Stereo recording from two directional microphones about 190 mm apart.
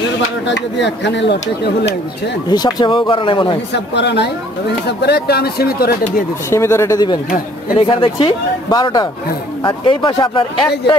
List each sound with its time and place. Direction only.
0.5 s speech: 65° left (ahead or behind)
2.5 s speech: 20° left (ahead or behind)
3.7 s speech: 65° left (ahead or behind)
6.5 s speech: 15° left (ahead or behind)